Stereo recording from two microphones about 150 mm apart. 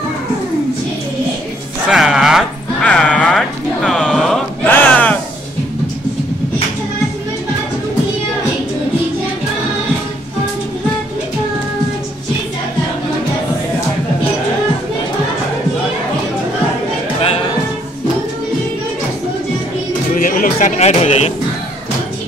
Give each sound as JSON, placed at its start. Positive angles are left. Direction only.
{"t": 1.9, "sound": "music", "side_deg": -5}
{"t": 2.8, "sound": "a sound", "side_deg": 10}
{"t": 20.1, "sound": "music", "side_deg": 65}